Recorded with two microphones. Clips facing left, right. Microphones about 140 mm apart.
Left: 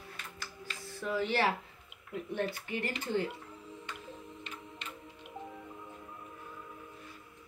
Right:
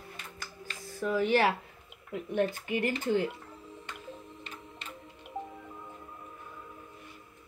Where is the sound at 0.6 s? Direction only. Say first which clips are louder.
Right 5 dB; 45° right (ahead or behind).